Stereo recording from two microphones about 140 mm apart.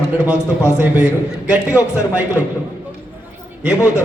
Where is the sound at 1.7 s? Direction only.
20° left (ahead or behind).